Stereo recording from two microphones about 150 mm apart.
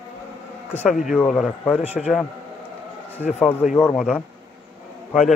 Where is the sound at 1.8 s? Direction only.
5° right (ahead or behind).